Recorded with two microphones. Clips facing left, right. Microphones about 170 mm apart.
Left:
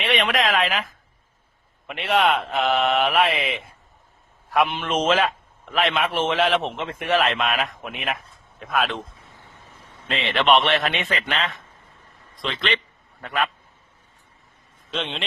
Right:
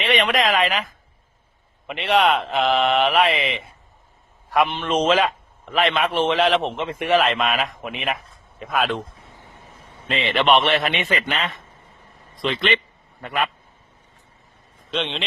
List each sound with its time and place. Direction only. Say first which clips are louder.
0.0 s a woman's voice: right 2 dB; centre (ahead or behind)
10.1 s a man's voice: right 1 dB; centre (ahead or behind)
13.2 s a man's voice: right 1 dB; centre (ahead or behind)
14.8 s a man's voice: right 3 dB; centre (ahead or behind)